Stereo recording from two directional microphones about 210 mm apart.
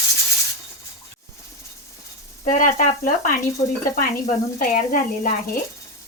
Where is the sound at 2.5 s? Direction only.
40° left (ahead or behind).